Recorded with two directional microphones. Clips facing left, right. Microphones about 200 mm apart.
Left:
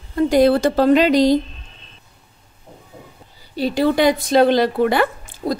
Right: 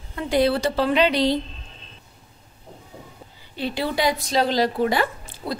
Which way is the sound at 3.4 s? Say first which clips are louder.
Left 9 dB; 40° left (ahead or behind).